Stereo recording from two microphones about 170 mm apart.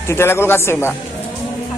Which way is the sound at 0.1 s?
15° left (ahead or behind).